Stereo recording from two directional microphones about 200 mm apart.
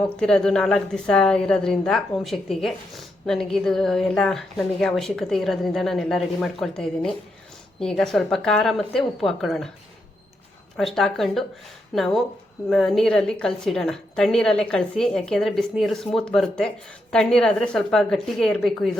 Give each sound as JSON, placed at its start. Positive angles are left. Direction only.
{"t": 0.2, "sound": "a woman's voice", "side_deg": 5}
{"t": 10.8, "sound": "a woman's voice", "side_deg": 0}